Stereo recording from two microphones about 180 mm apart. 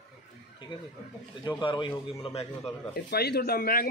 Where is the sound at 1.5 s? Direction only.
25° left (ahead or behind).